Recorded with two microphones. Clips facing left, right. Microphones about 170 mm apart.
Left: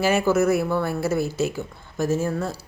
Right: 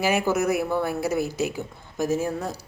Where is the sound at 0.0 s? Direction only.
15° right (ahead or behind).